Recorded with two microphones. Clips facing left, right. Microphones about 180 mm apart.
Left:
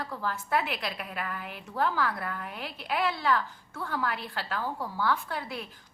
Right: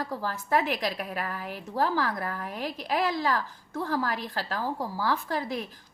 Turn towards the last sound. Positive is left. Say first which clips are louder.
# right 4 dB
turn(degrees=-40)  # may be behind; listen again after turning